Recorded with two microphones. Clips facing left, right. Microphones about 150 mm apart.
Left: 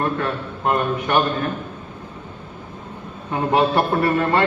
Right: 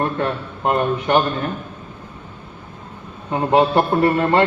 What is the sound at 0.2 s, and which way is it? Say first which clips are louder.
A man's voice: right 2 dB; 25° right (ahead or behind).